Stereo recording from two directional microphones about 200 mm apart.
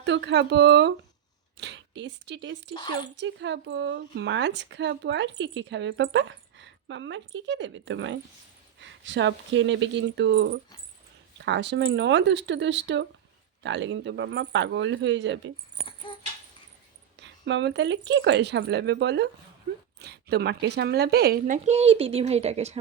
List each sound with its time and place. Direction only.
0.0 s speech: 65° right (ahead or behind)
2.7 s speech: 20° left (ahead or behind)
3.2 s speech: 65° right (ahead or behind)
17.2 s speech: 60° right (ahead or behind); by 22.8 s 30° right (ahead or behind)